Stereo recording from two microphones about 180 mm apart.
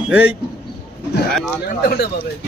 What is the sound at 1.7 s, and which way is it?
Speech, 60° left (ahead or behind).